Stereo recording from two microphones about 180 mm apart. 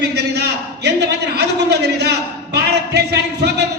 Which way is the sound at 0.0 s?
70° right (ahead or behind).